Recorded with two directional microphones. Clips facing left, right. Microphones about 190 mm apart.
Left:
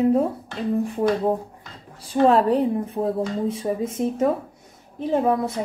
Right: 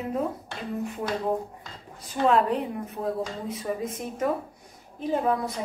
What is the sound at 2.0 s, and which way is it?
Speech, 35° left (ahead or behind).